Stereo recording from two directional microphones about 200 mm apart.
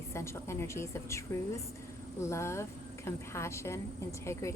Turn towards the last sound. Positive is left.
turn(degrees=15)  # may be behind; listen again after turning